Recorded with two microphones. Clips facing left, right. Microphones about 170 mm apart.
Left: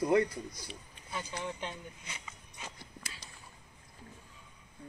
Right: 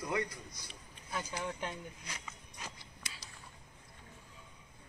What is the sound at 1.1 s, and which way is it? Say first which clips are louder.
Speech: even; 5° right (ahead or behind).